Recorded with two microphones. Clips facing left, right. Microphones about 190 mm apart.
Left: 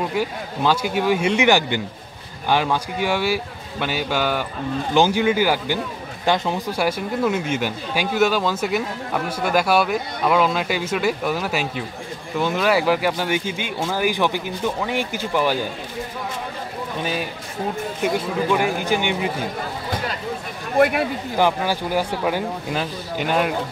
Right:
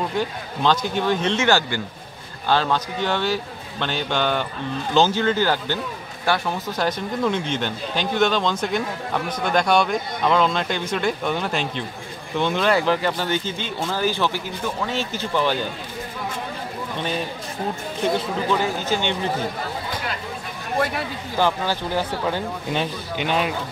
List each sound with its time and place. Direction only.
0.1 s speech: 10° left (ahead or behind)
17.0 s speech: 5° left (ahead or behind)
20.7 s speech: 55° left (ahead or behind)
21.4 s speech: 15° left (ahead or behind)